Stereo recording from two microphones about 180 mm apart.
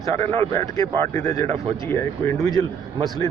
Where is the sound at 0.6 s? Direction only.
15° left (ahead or behind).